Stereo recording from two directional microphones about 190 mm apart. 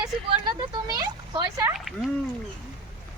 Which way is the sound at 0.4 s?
20° right (ahead or behind).